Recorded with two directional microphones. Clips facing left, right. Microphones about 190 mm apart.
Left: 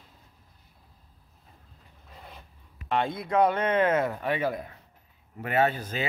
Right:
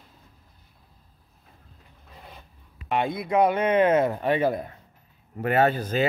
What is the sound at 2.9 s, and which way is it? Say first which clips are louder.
Speech: right 2 dB; 15° right (ahead or behind).